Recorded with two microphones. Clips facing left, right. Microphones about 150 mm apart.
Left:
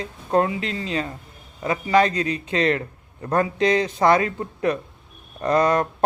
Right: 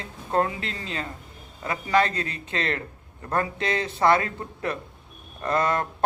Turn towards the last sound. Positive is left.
turn(degrees=20)  # may be behind; listen again after turning